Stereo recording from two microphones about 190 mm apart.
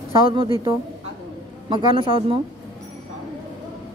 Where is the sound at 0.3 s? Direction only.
25° right (ahead or behind).